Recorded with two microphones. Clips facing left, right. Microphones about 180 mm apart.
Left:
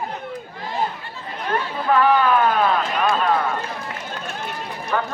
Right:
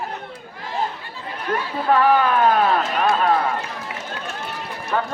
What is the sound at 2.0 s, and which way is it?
Run, 45° right (ahead or behind).